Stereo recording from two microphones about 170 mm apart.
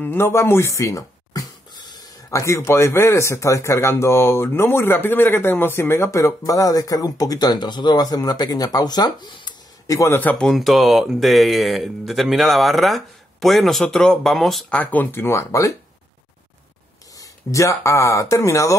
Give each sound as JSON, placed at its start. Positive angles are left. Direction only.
{"t": 0.0, "sound": "speech", "side_deg": 15}
{"t": 17.2, "sound": "speech", "side_deg": 20}